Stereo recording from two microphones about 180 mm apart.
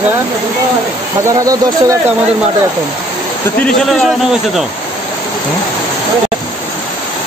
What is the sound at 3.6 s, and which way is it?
A man's voice, centre (ahead or behind).